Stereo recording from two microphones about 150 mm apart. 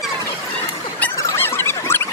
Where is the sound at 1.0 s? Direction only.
15° left (ahead or behind).